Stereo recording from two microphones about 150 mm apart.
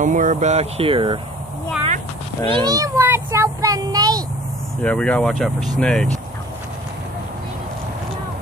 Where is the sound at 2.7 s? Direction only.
20° right (ahead or behind).